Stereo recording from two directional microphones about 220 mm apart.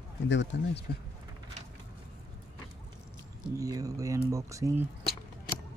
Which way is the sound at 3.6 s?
15° right (ahead or behind).